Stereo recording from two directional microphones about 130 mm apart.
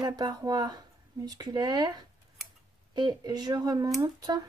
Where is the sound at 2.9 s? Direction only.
35° right (ahead or behind).